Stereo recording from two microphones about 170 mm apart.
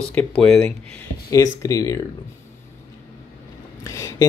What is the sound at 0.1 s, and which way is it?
Speech, 10° left (ahead or behind).